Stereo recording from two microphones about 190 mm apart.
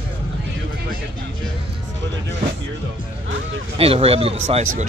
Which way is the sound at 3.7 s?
30° right (ahead or behind).